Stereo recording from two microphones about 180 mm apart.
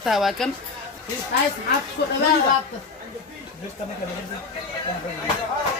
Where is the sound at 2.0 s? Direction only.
70° left (ahead or behind).